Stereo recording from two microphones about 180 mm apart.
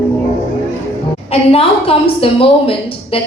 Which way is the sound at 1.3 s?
30° left (ahead or behind).